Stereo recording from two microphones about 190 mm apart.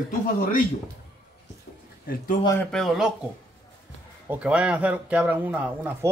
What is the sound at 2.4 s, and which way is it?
Speech, 15° left (ahead or behind).